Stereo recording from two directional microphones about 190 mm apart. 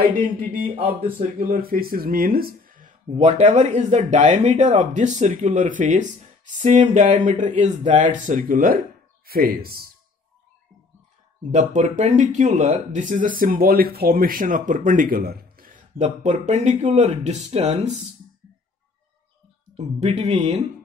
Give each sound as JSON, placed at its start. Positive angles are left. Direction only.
{"t": 0.4, "sound": "speech", "side_deg": -45}
{"t": 11.5, "sound": "speech", "side_deg": -40}
{"t": 19.8, "sound": "speech", "side_deg": -35}